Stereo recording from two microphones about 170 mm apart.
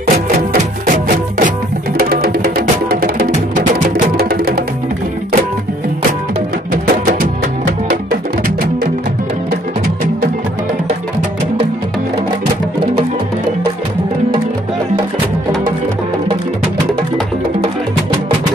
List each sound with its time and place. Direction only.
1.0 s music: 50° right (ahead or behind)
2.0 s music: 60° right (ahead or behind)
6.7 s music: 55° right (ahead or behind)